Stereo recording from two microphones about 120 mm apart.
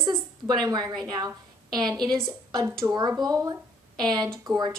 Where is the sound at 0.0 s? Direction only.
35° right (ahead or behind).